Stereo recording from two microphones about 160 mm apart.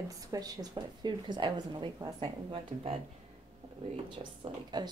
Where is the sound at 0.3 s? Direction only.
25° right (ahead or behind).